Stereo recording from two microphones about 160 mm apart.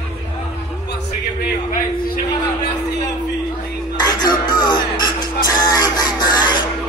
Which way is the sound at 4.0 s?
25° left (ahead or behind).